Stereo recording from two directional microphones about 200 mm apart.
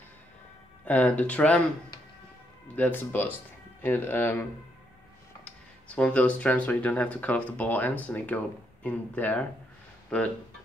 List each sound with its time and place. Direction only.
0.8 s speech: 5° left (ahead or behind)
2.7 s speech: 10° left (ahead or behind)
5.4 s speech: 5° left (ahead or behind)